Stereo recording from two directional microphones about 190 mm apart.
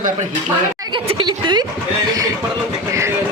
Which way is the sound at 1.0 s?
25° right (ahead or behind).